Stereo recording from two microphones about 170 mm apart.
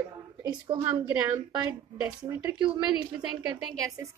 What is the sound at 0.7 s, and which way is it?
A woman's voice, 25° right (ahead or behind).